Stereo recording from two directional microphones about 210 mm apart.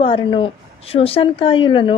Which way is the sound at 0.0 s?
25° left (ahead or behind).